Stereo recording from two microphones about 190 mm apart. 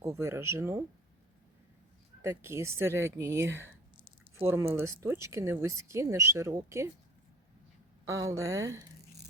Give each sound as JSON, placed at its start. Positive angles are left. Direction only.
{"t": 0.0, "sound": "speech", "side_deg": -15}
{"t": 2.2, "sound": "speech", "side_deg": -15}
{"t": 4.4, "sound": "speech", "side_deg": -30}
{"t": 4.7, "sound": "speech", "side_deg": -15}
{"t": 8.0, "sound": "speech", "side_deg": -15}